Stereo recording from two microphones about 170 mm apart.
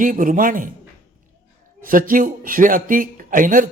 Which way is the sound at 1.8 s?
55° right (ahead or behind).